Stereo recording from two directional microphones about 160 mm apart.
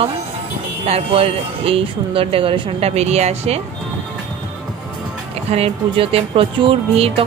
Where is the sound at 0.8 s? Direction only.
40° right (ahead or behind).